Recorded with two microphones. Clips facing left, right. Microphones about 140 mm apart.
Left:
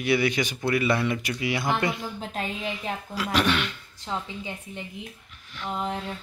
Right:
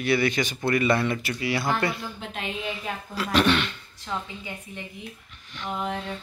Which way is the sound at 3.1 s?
10° left (ahead or behind).